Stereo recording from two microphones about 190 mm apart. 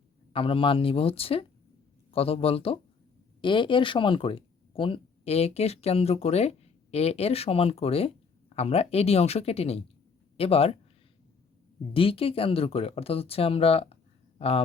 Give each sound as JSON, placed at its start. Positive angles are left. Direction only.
{"t": 0.3, "sound": "speech", "side_deg": 30}
{"t": 11.9, "sound": "speech", "side_deg": 30}